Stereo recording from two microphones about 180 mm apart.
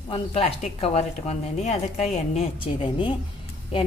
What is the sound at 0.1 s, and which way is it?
A woman's voice, 35° left (ahead or behind).